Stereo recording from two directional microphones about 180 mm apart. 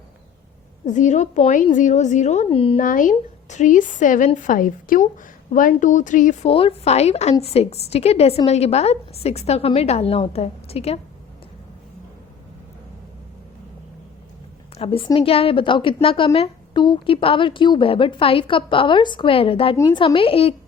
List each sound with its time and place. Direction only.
0.9 s a woman's voice: 45° left (ahead or behind)
2.7 s a woman's voice: 45° left (ahead or behind)
6.5 s a woman's voice: 30° left (ahead or behind)
14.8 s a woman's voice: 30° left (ahead or behind)